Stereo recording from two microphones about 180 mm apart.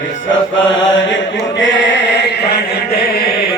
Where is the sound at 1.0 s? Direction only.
90° left; by 3.3 s 65° left (ahead or behind).